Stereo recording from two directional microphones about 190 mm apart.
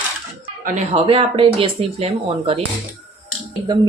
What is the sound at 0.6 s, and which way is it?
Speech, 40° right (ahead or behind).